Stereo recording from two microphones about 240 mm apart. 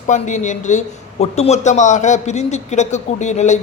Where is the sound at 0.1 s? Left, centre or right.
Left.